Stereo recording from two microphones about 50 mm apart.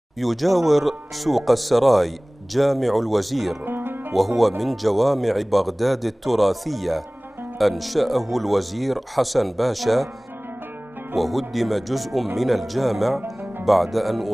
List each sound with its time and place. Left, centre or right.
0.2 s speech: centre
3.6 s music: right
4.1 s speech: centre
11.1 s speech: centre
13.2 s music: right
13.7 s speech: centre